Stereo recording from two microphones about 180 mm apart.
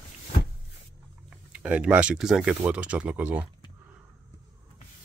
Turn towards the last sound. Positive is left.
turn(degrees=-10)  # may be behind; listen again after turning